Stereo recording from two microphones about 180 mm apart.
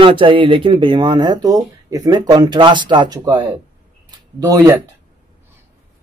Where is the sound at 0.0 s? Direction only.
30° right (ahead or behind).